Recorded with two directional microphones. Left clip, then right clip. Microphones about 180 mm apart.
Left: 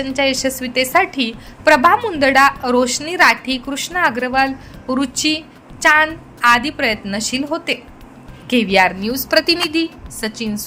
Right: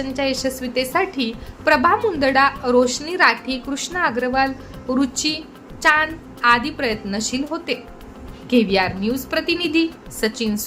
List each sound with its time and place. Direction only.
0.0 s a woman's voice: 15° left (ahead or behind)
9.0 s a woman's voice: 30° left (ahead or behind)
10.2 s a woman's voice: 10° left (ahead or behind)